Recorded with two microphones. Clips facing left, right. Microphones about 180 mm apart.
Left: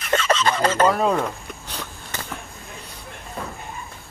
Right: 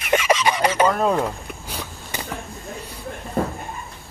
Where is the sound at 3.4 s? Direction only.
50° right (ahead or behind).